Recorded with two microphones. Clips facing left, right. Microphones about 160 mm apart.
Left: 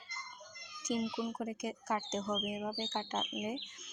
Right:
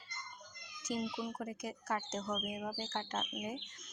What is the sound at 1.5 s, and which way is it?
Speech, 20° left (ahead or behind).